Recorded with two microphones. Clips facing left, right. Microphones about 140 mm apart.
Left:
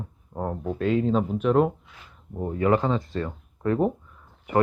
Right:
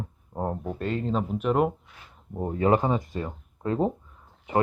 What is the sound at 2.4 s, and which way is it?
A man's voice, 25° right (ahead or behind).